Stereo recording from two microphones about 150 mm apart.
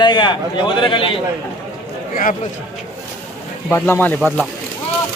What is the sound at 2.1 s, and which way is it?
Speech, 65° left (ahead or behind).